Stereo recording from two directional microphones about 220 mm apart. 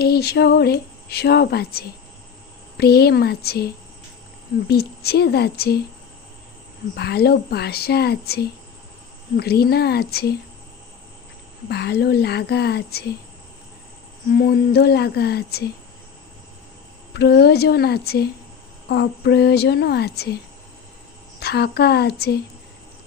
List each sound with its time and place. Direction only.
0.0 s speech: 45° left (ahead or behind)
4.7 s speech: 45° left (ahead or behind)
6.9 s speech: 45° left (ahead or behind)
11.7 s speech: 50° left (ahead or behind)
14.3 s speech: 45° left (ahead or behind)
17.2 s speech: 50° left (ahead or behind)